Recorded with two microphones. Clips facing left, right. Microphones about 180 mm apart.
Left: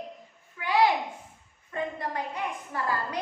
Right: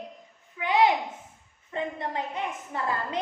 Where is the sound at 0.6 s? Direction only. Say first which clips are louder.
Right 1 dB; 20° right (ahead or behind).